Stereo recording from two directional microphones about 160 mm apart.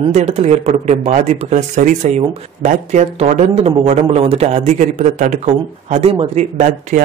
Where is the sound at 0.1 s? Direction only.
45° right (ahead or behind).